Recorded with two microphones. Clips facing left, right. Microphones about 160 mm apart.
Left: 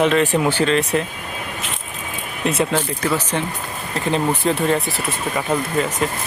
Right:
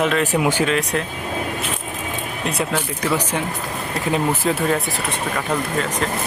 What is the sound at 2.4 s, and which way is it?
Speech, centre (ahead or behind).